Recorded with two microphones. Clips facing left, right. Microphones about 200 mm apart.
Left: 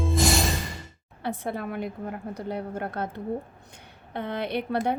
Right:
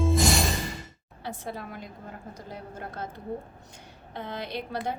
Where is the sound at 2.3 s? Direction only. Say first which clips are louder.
Left 9 dB; 60° left (ahead or behind).